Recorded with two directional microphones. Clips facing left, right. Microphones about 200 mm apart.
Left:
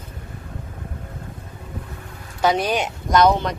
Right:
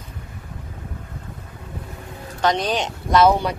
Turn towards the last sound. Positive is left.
turn(degrees=-5)  # may be behind; listen again after turning